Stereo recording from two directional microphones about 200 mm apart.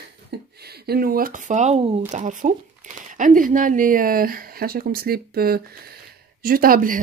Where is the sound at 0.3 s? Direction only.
55° right (ahead or behind).